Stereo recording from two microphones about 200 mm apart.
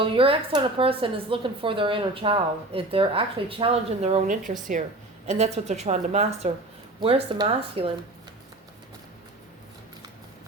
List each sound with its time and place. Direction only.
0.0 s a woman's voice: 25° right (ahead or behind)